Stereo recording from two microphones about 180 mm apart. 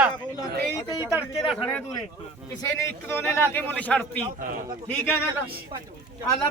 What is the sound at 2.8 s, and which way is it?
A man's voice, 15° left (ahead or behind).